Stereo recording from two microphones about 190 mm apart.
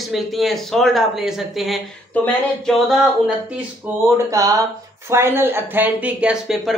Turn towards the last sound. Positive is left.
turn(degrees=-5)  # may be behind; listen again after turning